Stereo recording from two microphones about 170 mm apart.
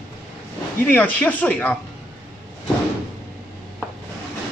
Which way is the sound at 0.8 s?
10° left (ahead or behind).